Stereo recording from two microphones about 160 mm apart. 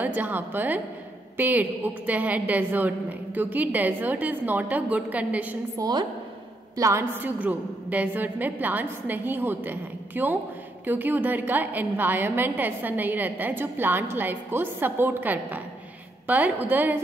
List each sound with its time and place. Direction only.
0.0 s a woman's voice: 10° right (ahead or behind)
5.8 s a woman's voice: 25° right (ahead or behind)